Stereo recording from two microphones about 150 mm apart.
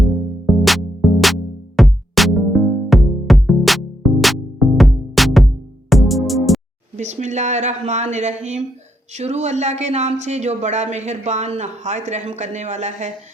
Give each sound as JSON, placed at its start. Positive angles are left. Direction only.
{"t": 0.0, "sound": "music", "side_deg": 0}
{"t": 6.9, "sound": "speech", "side_deg": -50}